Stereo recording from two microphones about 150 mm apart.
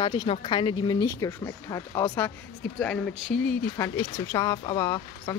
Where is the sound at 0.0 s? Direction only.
35° left (ahead or behind); by 2.3 s 15° left (ahead or behind).